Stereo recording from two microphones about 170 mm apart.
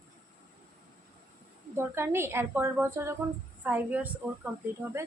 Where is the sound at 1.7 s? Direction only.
15° right (ahead or behind).